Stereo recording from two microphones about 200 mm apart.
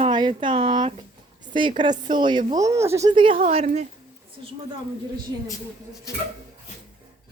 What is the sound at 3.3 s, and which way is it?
Speech, 35° right (ahead or behind).